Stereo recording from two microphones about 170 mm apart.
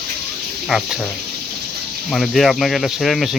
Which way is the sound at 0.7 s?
5° right (ahead or behind).